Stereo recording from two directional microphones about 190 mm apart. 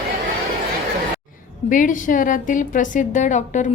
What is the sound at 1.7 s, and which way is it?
A woman's voice, 45° left (ahead or behind).